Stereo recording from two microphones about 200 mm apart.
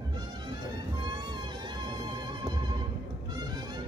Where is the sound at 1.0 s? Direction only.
20° right (ahead or behind).